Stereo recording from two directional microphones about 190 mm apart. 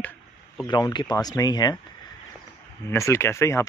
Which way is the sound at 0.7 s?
25° left (ahead or behind).